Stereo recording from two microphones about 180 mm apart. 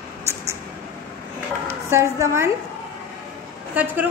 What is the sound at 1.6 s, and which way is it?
Speech, 15° right (ahead or behind).